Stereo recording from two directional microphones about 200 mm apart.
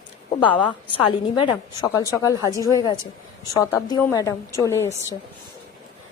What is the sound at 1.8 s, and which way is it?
A woman's voice, 15° left (ahead or behind).